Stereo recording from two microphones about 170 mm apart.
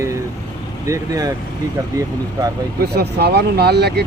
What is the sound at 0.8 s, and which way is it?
Speech, 20° right (ahead or behind).